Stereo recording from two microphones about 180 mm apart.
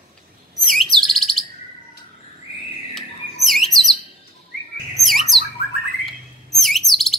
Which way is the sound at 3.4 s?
Centre (ahead or behind).